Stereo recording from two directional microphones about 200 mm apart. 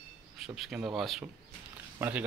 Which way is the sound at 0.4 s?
5° right (ahead or behind).